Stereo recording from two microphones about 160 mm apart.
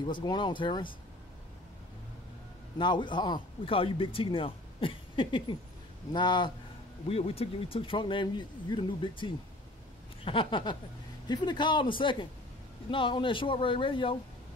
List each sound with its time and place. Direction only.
0.0 s speech: 30° left (ahead or behind)
2.8 s speech: 30° left (ahead or behind)